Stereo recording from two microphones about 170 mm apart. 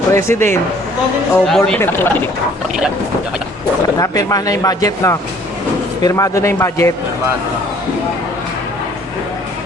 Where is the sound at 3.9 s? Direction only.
20° left (ahead or behind).